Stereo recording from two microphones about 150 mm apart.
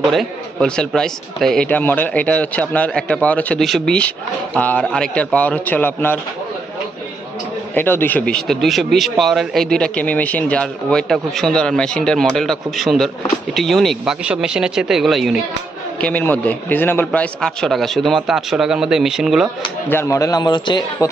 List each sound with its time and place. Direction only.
0.1 s speech: 5° left (ahead or behind)
7.7 s speech: 15° left (ahead or behind)
16.0 s speech: 10° left (ahead or behind)
19.9 s a man's voice: 20° left (ahead or behind)